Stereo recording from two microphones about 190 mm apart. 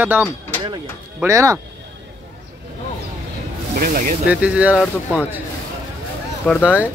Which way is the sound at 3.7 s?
50° right (ahead or behind).